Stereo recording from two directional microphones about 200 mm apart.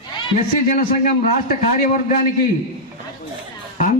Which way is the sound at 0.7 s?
40° left (ahead or behind).